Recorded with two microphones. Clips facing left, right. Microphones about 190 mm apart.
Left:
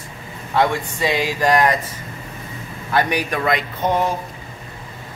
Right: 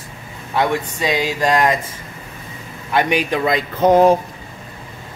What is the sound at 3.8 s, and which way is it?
Speech, 90° right.